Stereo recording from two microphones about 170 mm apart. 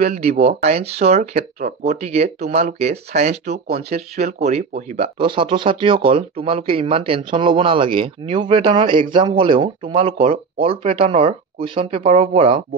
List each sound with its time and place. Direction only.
0.0 s speech: 40° right (ahead or behind)
0.3 s speech: 70° right (ahead or behind)
0.6 s speech: 40° right (ahead or behind)